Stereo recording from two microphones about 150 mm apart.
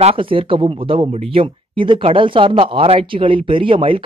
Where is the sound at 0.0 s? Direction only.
35° right (ahead or behind).